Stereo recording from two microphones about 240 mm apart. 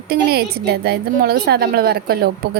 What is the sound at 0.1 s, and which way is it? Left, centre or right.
A woman's voice, right.